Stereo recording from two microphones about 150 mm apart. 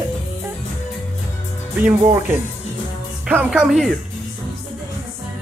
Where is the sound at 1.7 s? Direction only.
10° right (ahead or behind).